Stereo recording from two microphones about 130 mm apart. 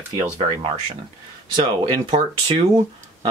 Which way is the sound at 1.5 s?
40° right (ahead or behind).